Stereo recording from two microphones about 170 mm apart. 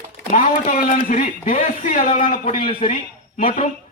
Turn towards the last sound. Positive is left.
turn(degrees=40)  # may be behind; listen again after turning